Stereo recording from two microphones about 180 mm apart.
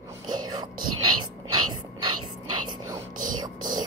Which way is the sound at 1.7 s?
25° right (ahead or behind).